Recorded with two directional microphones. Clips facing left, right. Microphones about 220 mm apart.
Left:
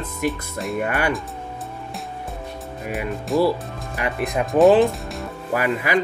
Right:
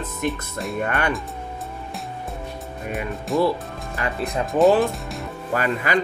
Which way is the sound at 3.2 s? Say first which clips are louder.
Left 1 dB; centre (ahead or behind).